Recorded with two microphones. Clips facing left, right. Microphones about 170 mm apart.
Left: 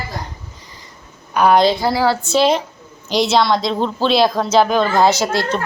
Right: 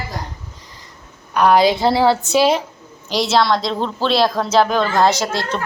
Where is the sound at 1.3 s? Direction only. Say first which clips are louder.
Even; centre (ahead or behind).